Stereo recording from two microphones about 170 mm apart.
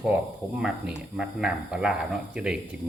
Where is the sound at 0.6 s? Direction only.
5° right (ahead or behind).